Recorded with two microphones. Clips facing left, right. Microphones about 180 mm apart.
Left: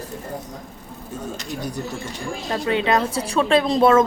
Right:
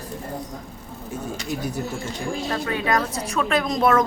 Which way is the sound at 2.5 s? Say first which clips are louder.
Left 5 dB; 25° left (ahead or behind).